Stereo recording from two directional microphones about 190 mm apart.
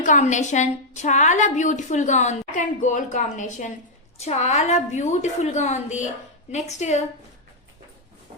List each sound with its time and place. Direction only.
0.0 s a woman's voice: 40° left (ahead or behind)